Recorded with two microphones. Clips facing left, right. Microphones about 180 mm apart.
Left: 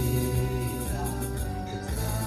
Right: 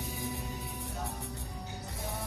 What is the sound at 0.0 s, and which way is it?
Music, 70° left (ahead or behind).